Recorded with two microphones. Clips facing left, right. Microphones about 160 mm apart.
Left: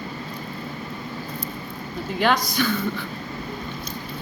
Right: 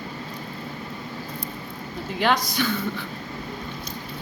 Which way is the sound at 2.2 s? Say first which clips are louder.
Left 1 dB; 25° right (ahead or behind).